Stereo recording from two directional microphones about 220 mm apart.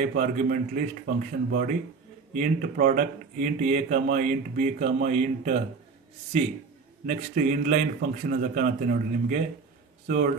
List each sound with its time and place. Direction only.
0.0 s speech: 40° right (ahead or behind)
7.1 s speech: 35° right (ahead or behind)